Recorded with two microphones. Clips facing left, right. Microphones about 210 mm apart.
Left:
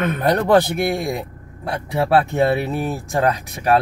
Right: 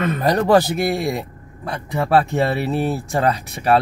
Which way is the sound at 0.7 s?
Centre (ahead or behind).